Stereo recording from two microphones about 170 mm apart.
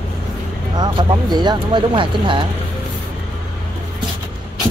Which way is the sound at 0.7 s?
25° right (ahead or behind).